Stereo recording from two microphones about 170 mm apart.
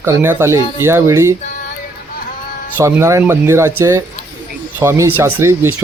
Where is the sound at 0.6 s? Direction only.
25° left (ahead or behind).